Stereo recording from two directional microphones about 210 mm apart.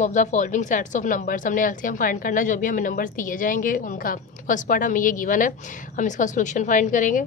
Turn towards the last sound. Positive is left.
turn(degrees=40)  # may be behind; listen again after turning